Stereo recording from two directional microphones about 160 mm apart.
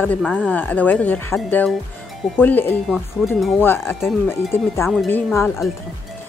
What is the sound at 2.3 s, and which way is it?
A woman's voice, 10° left (ahead or behind).